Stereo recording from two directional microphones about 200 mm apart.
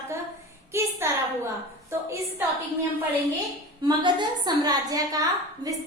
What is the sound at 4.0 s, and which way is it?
A woman's voice, 25° right (ahead or behind).